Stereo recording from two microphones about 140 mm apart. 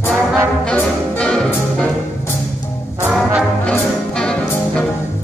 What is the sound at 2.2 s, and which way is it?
Music, 20° left (ahead or behind).